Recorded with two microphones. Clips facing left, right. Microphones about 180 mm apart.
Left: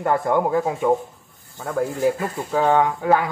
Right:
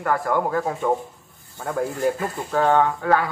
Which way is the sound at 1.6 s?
Centre (ahead or behind).